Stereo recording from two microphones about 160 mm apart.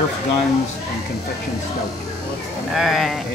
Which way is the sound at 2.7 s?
Centre (ahead or behind).